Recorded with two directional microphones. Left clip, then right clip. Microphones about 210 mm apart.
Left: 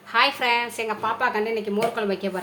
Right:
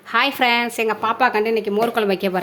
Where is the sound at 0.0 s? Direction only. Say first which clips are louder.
Right 3 dB; 45° right (ahead or behind).